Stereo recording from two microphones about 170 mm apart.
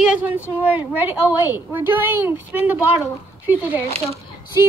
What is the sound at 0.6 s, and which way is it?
A woman's voice, 10° right (ahead or behind).